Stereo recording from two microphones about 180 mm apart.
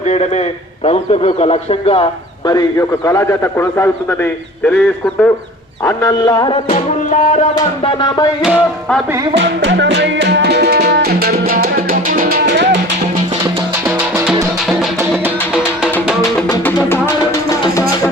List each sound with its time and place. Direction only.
0.9 s speech: 35° left (ahead or behind)
2.5 s a man's voice: 20° left (ahead or behind)
5.8 s music: 20° left (ahead or behind)
7.9 s music: 25° left (ahead or behind)
9.3 s music: 75° right (ahead or behind); by 12.4 s 50° right (ahead or behind)